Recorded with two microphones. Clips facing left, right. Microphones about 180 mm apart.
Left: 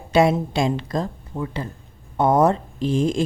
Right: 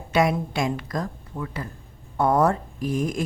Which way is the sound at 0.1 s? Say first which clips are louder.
Left 4 dB; 25° left (ahead or behind).